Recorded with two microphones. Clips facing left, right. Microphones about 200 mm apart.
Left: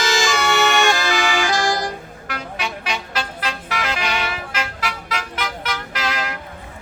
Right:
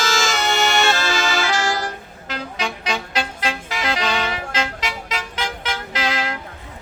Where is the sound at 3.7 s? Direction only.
30° right (ahead or behind).